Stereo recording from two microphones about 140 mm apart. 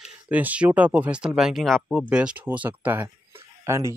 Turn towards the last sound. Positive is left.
turn(degrees=-20)  # may be behind; listen again after turning